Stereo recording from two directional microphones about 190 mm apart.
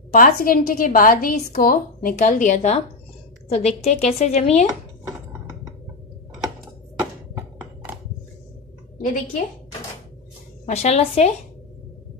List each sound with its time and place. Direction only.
0.1 s a woman's voice: 45° left (ahead or behind)
9.0 s speech: 45° left (ahead or behind)
10.6 s a woman's voice: 35° left (ahead or behind)